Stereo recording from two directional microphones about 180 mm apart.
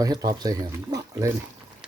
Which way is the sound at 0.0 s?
20° right (ahead or behind).